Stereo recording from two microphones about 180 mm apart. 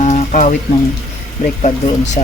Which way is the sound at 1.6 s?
40° left (ahead or behind).